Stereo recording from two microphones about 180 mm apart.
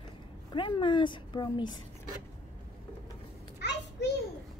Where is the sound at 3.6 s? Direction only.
70° left (ahead or behind).